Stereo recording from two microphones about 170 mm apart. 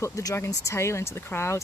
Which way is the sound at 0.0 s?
20° left (ahead or behind).